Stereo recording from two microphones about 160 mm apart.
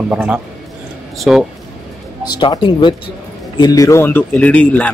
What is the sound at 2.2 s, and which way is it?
A man's voice, 25° left (ahead or behind).